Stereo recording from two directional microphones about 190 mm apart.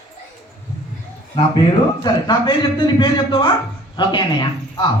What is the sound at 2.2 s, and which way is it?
A man's voice, 25° left (ahead or behind).